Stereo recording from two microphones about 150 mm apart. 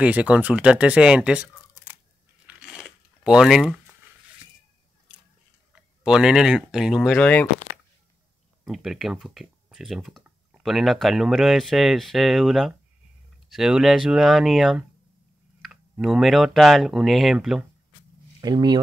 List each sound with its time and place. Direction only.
0.0 s speech: 10° right (ahead or behind)
2.7 s a sound: 5° right (ahead or behind)
6.0 s speech: 5° right (ahead or behind)
7.2 s speech: 10° left (ahead or behind)
8.6 s speech: centre (ahead or behind)
18.4 s speech: 30° right (ahead or behind)